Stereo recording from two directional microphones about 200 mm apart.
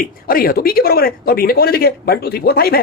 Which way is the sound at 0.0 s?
45° left (ahead or behind).